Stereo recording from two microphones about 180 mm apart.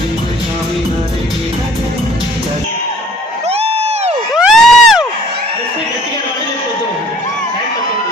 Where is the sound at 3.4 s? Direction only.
35° right (ahead or behind).